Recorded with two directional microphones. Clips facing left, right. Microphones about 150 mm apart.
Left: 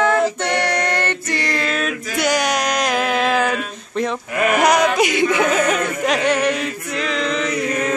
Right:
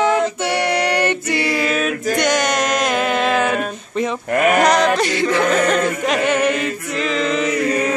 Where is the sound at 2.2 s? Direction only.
Centre (ahead or behind).